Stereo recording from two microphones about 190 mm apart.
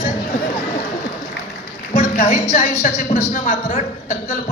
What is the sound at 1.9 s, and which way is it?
A woman's voice, 40° left (ahead or behind).